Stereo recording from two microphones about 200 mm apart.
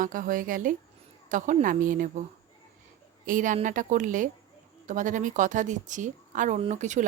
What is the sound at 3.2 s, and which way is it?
A woman's voice, 40° right (ahead or behind).